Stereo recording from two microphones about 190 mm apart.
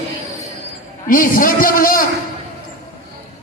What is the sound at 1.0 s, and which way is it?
A man's voice, 45° left (ahead or behind).